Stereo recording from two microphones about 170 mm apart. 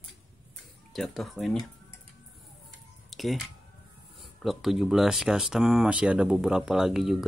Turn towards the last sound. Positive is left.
turn(degrees=0)  # may be behind; listen again after turning